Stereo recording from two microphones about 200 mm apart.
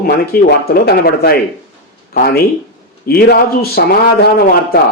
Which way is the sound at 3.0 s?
50° left (ahead or behind).